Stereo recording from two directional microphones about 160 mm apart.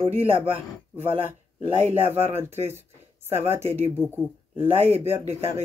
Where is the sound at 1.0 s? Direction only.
10° right (ahead or behind).